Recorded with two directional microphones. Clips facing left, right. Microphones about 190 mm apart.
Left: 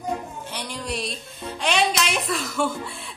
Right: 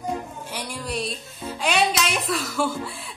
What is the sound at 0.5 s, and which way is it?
Speech, 10° right (ahead or behind).